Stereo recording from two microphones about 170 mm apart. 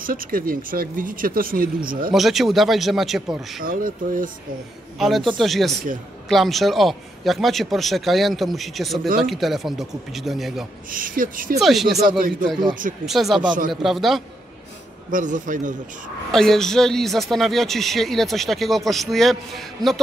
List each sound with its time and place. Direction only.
0.0 s speech: 55° right (ahead or behind)
2.1 s a man's voice: centre (ahead or behind)
3.6 s speech: 55° right (ahead or behind)
4.9 s a man's voice: centre (ahead or behind)
10.9 s speech: 55° right (ahead or behind)
11.6 s a man's voice: centre (ahead or behind)
12.1 s speech: 55° right (ahead or behind)
13.0 s a man's voice: centre (ahead or behind)
15.0 s speech: 50° right (ahead or behind)
16.3 s a man's voice: 5° left (ahead or behind)